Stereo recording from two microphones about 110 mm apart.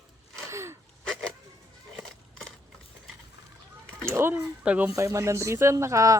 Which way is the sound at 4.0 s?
25° right (ahead or behind).